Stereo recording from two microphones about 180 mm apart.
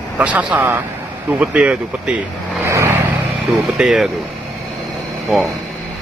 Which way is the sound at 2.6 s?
15° right (ahead or behind).